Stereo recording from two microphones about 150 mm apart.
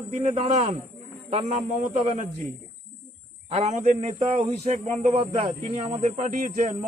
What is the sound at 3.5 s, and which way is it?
Speech, 50° right (ahead or behind).